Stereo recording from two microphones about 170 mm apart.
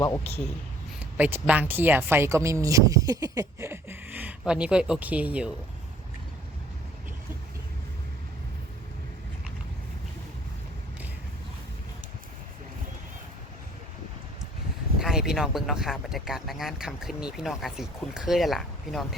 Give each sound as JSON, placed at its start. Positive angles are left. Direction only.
{"t": 0.0, "sound": "a man's voice", "side_deg": 20}
{"t": 0.9, "sound": "speech", "side_deg": -10}
{"t": 14.9, "sound": "speech", "side_deg": 0}